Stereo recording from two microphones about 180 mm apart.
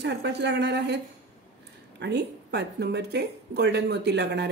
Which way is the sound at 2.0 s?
70° right (ahead or behind).